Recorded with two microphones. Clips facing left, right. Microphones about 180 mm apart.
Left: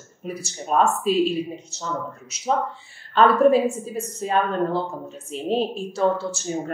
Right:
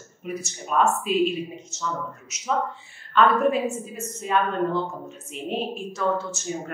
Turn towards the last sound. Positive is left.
turn(degrees=30)  # may be behind; listen again after turning